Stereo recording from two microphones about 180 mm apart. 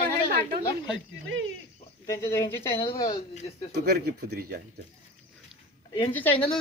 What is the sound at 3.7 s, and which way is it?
Speech, 65° right (ahead or behind).